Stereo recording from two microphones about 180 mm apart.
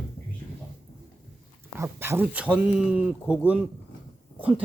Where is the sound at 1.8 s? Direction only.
15° right (ahead or behind).